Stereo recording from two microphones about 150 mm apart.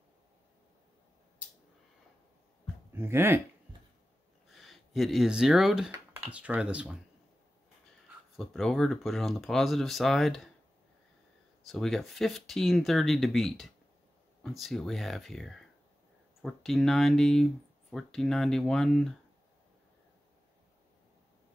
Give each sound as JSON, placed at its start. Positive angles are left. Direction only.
{"t": 2.9, "sound": "speech", "side_deg": -15}
{"t": 4.5, "sound": "speech", "side_deg": 0}
{"t": 8.4, "sound": "speech", "side_deg": 0}
{"t": 11.6, "sound": "speech", "side_deg": 0}